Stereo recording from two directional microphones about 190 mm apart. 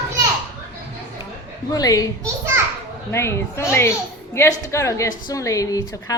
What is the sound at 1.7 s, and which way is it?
Speech, 20° left (ahead or behind).